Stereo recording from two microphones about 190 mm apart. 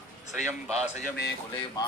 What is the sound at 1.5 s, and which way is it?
Speech, 25° left (ahead or behind).